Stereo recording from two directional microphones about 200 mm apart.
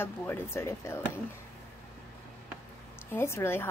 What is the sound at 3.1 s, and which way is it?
Speech, 10° left (ahead or behind).